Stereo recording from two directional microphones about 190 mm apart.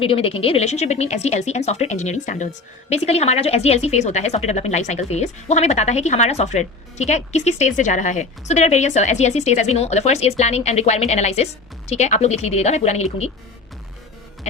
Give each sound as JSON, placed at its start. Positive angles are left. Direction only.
{"t": 0.0, "sound": "a woman's voice", "side_deg": 30}